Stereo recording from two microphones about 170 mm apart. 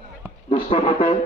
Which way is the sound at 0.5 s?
35° left (ahead or behind).